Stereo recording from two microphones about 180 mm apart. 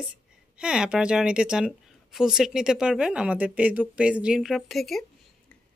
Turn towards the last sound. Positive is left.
turn(degrees=0)  # may be behind; listen again after turning